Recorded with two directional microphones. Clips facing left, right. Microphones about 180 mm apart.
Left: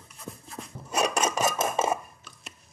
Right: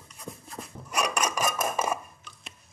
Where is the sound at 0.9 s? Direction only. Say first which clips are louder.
Left 3 dB; 25° left (ahead or behind).